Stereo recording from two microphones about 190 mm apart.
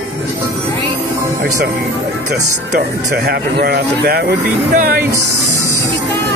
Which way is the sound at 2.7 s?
55° right (ahead or behind).